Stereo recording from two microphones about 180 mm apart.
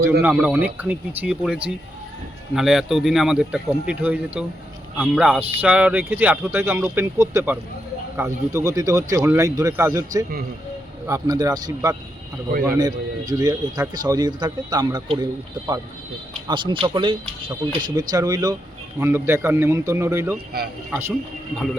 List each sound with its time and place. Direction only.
0.0 s speech: 10° right (ahead or behind)